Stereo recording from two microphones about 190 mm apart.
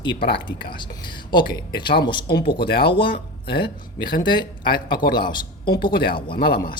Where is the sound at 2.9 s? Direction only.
25° left (ahead or behind).